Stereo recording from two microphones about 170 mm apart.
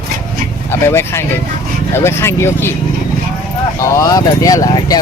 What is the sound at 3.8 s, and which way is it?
Speech, 20° left (ahead or behind).